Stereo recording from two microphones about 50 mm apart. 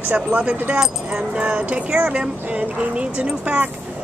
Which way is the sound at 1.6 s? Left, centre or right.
Right.